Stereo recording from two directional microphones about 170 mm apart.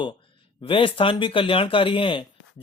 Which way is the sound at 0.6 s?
30° left (ahead or behind).